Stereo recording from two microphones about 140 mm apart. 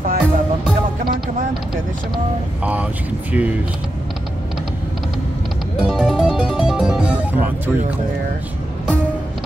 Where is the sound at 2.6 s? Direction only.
10° right (ahead or behind).